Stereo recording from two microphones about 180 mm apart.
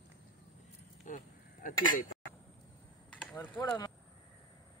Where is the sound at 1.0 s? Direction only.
50° left (ahead or behind).